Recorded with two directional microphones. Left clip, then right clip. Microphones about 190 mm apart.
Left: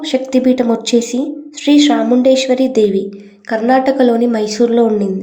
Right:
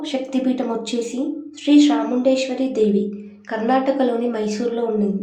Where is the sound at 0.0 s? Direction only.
35° left (ahead or behind).